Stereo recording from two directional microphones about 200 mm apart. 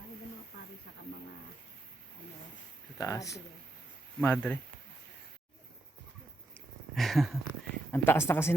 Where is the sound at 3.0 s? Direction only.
15° left (ahead or behind).